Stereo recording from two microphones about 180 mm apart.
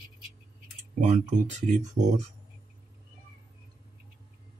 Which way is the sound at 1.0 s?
40° right (ahead or behind).